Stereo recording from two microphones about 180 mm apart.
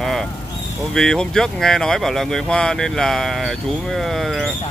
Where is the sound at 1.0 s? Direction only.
Centre (ahead or behind).